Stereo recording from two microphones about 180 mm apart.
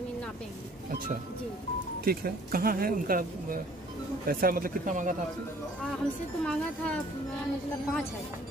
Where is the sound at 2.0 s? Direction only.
55° right (ahead or behind).